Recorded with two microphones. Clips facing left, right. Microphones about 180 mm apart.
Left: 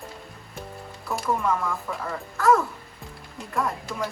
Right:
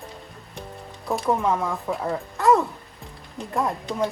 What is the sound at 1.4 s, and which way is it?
Speech, 20° right (ahead or behind).